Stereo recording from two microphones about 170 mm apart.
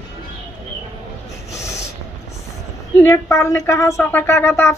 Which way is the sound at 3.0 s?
20° left (ahead or behind).